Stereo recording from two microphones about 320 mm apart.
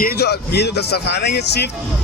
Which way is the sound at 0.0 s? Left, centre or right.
Left.